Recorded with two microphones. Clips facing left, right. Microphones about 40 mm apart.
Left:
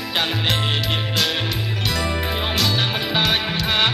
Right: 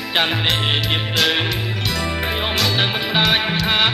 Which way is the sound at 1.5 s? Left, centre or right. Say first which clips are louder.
Right 1 dB; centre.